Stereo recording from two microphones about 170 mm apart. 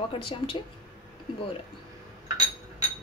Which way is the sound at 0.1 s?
30° left (ahead or behind).